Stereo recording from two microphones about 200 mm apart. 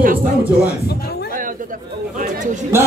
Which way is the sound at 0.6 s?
50° left (ahead or behind).